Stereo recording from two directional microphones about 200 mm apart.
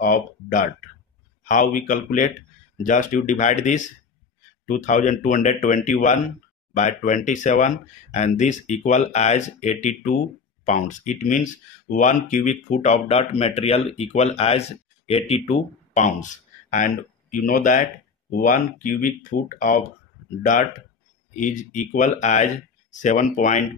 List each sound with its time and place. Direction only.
0.0 s speech: 45° left (ahead or behind)
21.4 s speech: 40° left (ahead or behind)